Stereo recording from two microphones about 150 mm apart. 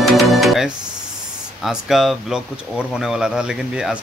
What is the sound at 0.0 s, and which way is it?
Music, centre (ahead or behind).